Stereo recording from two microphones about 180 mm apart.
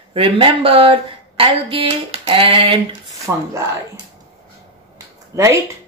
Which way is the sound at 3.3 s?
10° right (ahead or behind).